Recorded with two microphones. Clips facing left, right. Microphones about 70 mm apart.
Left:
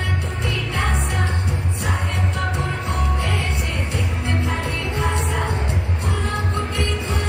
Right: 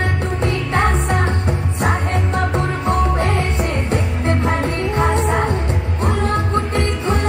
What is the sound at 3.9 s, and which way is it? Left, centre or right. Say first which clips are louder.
Music: right 5 dB; right.